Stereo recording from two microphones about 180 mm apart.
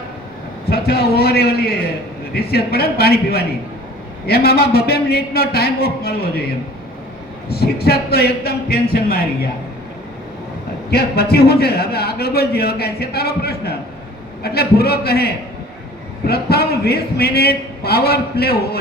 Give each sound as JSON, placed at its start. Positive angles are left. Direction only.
{"t": 0.7, "sound": "a man's voice", "side_deg": 60}
{"t": 7.5, "sound": "a man's voice", "side_deg": 60}
{"t": 10.9, "sound": "a man's voice", "side_deg": 60}